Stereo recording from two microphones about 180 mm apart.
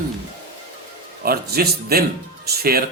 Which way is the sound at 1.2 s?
60° right (ahead or behind).